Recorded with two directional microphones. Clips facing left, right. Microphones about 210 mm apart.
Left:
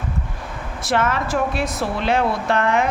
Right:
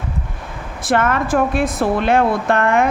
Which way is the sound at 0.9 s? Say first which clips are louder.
Right 4 dB; 55° right (ahead or behind).